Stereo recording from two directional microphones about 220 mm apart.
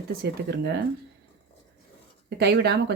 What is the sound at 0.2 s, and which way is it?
Speech, 50° right (ahead or behind).